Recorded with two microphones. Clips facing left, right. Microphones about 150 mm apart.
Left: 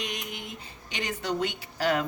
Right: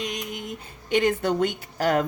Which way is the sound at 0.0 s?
40° right (ahead or behind).